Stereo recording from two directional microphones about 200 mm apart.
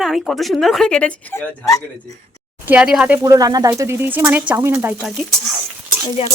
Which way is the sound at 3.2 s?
20° right (ahead or behind).